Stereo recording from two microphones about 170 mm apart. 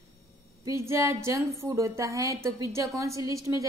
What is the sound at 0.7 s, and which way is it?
A woman's voice, 15° right (ahead or behind).